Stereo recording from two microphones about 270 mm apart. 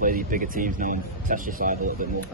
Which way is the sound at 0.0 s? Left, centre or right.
Right.